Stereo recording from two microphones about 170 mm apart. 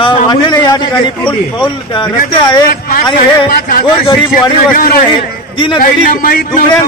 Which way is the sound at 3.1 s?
55° left (ahead or behind).